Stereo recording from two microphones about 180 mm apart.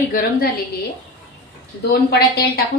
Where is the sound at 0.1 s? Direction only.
55° left (ahead or behind).